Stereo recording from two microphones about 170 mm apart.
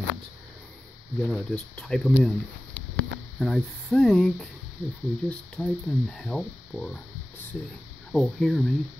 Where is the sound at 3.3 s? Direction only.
5° left (ahead or behind).